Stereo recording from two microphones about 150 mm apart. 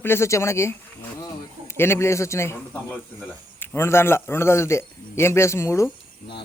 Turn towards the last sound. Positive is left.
turn(degrees=20)  # may be behind; listen again after turning